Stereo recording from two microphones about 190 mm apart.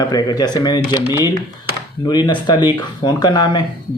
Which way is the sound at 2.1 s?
20° left (ahead or behind).